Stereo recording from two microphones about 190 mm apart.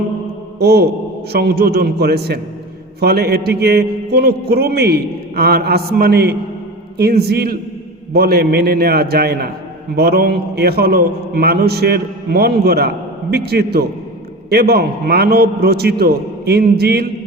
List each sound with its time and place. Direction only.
0.6 s a man's voice: 60° right (ahead or behind)